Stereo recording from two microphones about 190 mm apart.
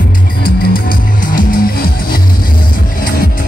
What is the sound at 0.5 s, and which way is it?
Music, 50° left (ahead or behind).